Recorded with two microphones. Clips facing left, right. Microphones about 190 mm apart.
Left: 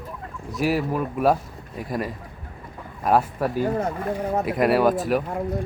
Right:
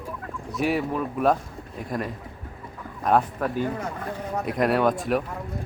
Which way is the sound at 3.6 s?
40° left (ahead or behind).